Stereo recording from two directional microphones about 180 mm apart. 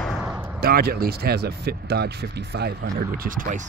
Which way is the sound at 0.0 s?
5° right (ahead or behind).